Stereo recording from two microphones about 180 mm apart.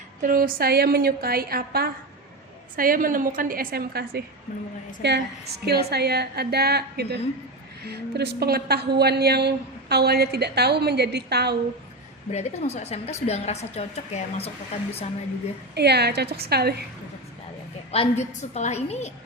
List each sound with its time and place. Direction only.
0.2 s a woman's voice: 50° right (ahead or behind)
5.0 s a woman's voice: 70° right (ahead or behind)
12.3 s a woman's voice: 35° left (ahead or behind)
15.7 s a woman's voice: 65° right (ahead or behind)
17.9 s a woman's voice: 35° left (ahead or behind)